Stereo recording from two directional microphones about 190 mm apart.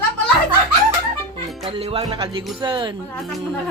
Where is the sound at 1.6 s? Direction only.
30° right (ahead or behind).